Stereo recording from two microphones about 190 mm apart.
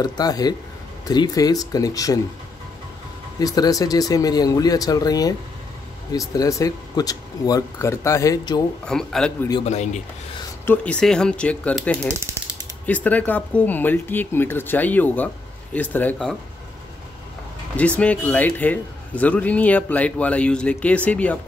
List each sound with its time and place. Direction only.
0.0 s speech: 20° left (ahead or behind)
3.3 s a man's voice: 20° left (ahead or behind)
8.8 s speech: 5° left (ahead or behind)
9.7 s speech: 35° left (ahead or behind)
10.6 s a man's voice: 10° left (ahead or behind)
17.7 s a man's voice: 5° left (ahead or behind)